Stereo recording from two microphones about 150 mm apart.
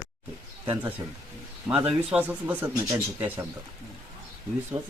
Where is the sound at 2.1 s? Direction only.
10° right (ahead or behind).